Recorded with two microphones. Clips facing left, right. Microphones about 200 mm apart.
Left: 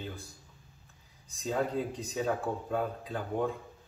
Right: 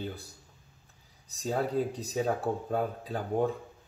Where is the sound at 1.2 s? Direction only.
40° right (ahead or behind).